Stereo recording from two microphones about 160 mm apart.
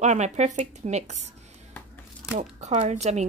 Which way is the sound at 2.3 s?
50° right (ahead or behind).